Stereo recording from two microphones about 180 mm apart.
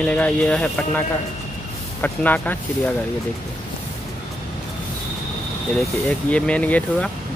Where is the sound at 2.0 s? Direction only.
10° left (ahead or behind).